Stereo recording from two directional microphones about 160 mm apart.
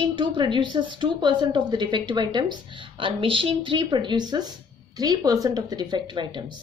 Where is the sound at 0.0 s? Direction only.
30° right (ahead or behind).